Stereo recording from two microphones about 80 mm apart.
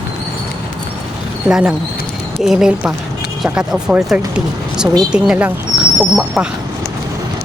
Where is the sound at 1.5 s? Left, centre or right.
Centre.